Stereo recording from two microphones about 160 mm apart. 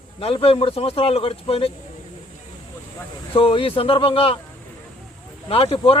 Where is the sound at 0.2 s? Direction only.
35° left (ahead or behind).